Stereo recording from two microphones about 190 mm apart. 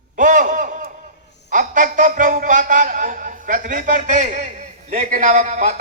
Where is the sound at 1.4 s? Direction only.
45° right (ahead or behind).